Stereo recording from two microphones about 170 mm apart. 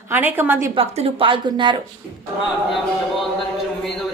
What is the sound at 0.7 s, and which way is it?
Speech, 30° right (ahead or behind).